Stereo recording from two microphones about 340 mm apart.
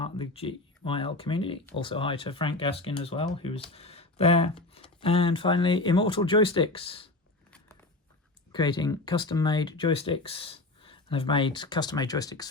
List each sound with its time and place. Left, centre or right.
0.0 s speech: centre
8.5 s speech: centre